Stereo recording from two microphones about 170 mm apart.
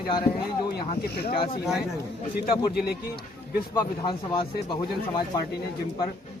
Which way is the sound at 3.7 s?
25° left (ahead or behind).